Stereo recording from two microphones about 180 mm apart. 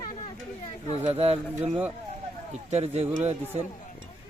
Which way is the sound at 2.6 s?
35° right (ahead or behind).